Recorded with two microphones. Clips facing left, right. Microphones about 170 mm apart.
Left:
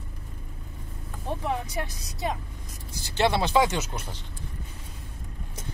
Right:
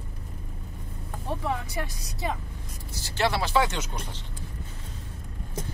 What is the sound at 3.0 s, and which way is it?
Speech, 20° left (ahead or behind).